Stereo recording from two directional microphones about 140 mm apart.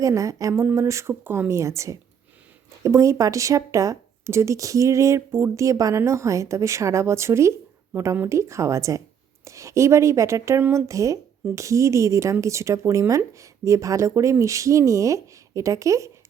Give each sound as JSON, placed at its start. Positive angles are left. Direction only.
{"t": 0.0, "sound": "speech", "side_deg": -25}